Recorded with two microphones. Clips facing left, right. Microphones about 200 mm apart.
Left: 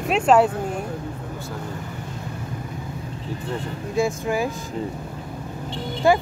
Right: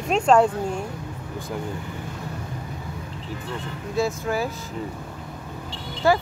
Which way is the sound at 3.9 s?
15° left (ahead or behind).